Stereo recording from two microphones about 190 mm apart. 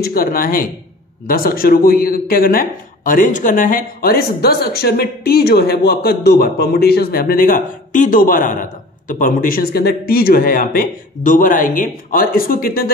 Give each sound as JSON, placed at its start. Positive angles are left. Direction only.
{"t": 0.0, "sound": "a man's voice", "side_deg": 50}